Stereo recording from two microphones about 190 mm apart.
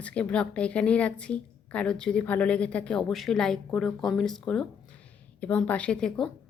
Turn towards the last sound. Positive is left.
turn(degrees=5)  # may be behind; listen again after turning